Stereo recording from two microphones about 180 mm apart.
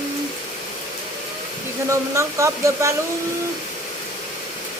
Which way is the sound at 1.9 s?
15° right (ahead or behind).